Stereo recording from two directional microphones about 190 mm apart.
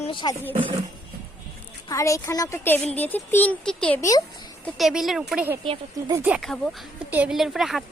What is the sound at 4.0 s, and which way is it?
Speech, 20° left (ahead or behind).